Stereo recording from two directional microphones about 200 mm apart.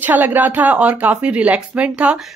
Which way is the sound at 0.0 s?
10° right (ahead or behind).